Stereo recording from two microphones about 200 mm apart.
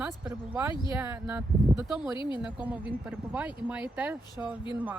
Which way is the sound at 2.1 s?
25° left (ahead or behind).